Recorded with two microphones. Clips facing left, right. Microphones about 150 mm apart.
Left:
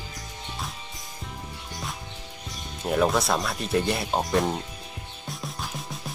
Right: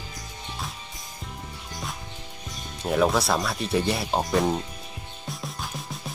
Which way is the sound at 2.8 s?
Centre (ahead or behind).